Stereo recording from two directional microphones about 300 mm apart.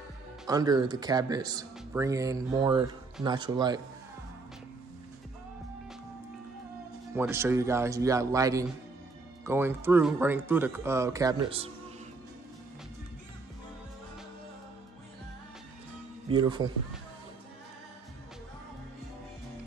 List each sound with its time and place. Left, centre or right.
0.5 s speech: centre
7.2 s speech: centre
16.3 s speech: centre